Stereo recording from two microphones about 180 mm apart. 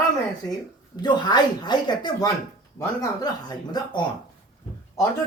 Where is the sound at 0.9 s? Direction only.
25° left (ahead or behind).